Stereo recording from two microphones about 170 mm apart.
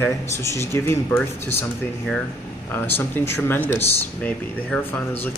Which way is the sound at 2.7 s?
15° left (ahead or behind).